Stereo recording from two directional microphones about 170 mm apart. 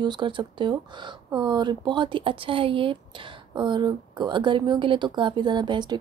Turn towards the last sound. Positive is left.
turn(degrees=-25)  # may be behind; listen again after turning